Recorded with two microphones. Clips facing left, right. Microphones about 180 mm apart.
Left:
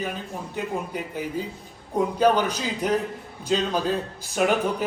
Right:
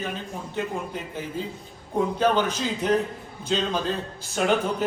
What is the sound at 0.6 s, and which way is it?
A man's voice, 5° left (ahead or behind).